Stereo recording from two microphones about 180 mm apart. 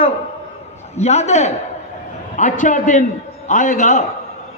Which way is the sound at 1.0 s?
40° left (ahead or behind).